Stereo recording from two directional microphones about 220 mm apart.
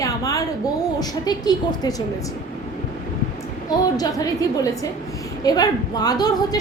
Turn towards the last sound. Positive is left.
turn(degrees=15)  # may be behind; listen again after turning